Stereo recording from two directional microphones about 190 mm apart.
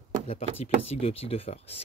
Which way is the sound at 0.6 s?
30° left (ahead or behind).